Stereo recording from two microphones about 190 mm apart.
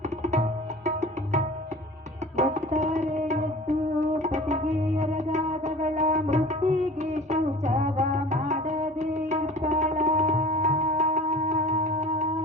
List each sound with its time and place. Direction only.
0.2 s tabla: 35° right (ahead or behind)
0.9 s music: 40° right (ahead or behind)